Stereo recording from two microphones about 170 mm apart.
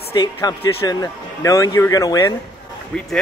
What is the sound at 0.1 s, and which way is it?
Speech, 25° left (ahead or behind).